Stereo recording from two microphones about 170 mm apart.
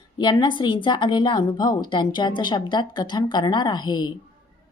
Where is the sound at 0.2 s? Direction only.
25° left (ahead or behind).